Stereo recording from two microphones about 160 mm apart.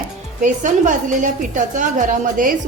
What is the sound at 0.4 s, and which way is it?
A woman's voice, 55° right (ahead or behind).